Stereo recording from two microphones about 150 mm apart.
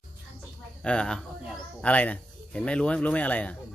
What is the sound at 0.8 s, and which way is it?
Speech, 5° left (ahead or behind).